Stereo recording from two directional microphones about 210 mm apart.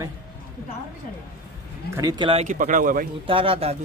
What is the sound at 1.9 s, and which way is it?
Speech, 20° right (ahead or behind).